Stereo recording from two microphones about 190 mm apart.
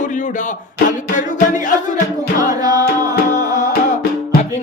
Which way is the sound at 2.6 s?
20° right (ahead or behind).